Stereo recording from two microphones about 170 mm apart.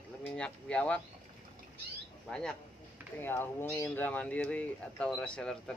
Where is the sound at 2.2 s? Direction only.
5° left (ahead or behind).